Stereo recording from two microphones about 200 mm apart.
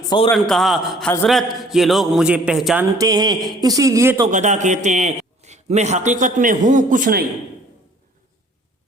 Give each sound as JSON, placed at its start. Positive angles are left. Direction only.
{"t": 0.3, "sound": "a man's voice", "side_deg": 0}
{"t": 3.0, "sound": "a man's voice", "side_deg": -20}
{"t": 4.3, "sound": "a man's voice", "side_deg": -35}